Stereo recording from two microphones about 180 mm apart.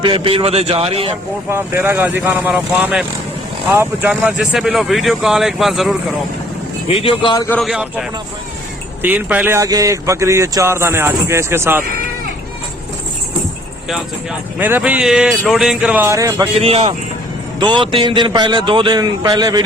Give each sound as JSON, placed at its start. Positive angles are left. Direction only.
{"t": 0.0, "sound": "a man's voice", "side_deg": -30}
{"t": 1.5, "sound": "speech", "side_deg": -15}
{"t": 6.8, "sound": "speech", "side_deg": 30}
{"t": 7.4, "sound": "a man's voice", "side_deg": 10}
{"t": 7.7, "sound": "speech", "side_deg": -5}
{"t": 14.6, "sound": "speech", "side_deg": -10}
{"t": 16.6, "sound": "a man's voice", "side_deg": -35}